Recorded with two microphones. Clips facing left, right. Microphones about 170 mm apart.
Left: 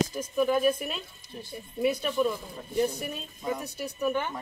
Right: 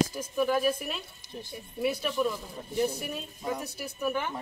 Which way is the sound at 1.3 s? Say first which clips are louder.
Even; 20° right (ahead or behind).